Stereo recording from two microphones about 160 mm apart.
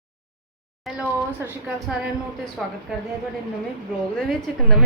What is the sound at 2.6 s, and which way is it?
Speech, centre (ahead or behind).